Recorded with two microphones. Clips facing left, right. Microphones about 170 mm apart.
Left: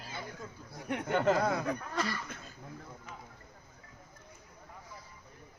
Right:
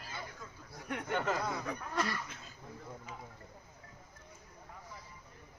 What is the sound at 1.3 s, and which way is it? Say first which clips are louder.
Speech: left 6 dB; 55° left (ahead or behind).